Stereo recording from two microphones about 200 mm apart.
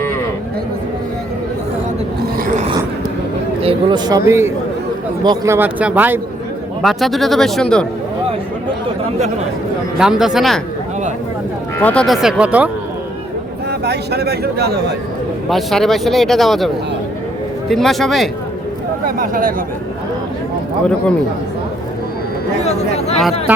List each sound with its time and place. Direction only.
2.5 s a sound: 35° right (ahead or behind)
3.6 s speech: 25° right (ahead or behind); by 7.9 s 5° left (ahead or behind)
10.0 s speech: 5° right (ahead or behind)
11.8 s speech: 5° left (ahead or behind)
13.7 s speech: 55° right (ahead or behind)
15.4 s speech: centre (ahead or behind)
19.0 s speech: 45° right (ahead or behind)
22.6 s speech: 30° left (ahead or behind)